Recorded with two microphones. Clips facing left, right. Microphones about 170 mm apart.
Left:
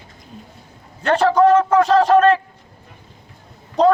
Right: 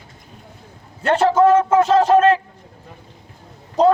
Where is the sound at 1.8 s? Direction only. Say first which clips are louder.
Even; 25° right (ahead or behind).